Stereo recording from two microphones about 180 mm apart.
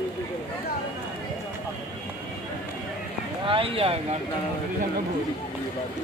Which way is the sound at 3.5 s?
30° right (ahead or behind).